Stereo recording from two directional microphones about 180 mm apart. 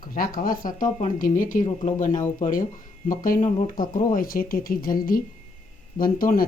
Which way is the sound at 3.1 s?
50° left (ahead or behind).